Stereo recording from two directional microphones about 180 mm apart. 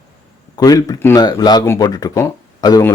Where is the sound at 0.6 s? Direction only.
20° left (ahead or behind).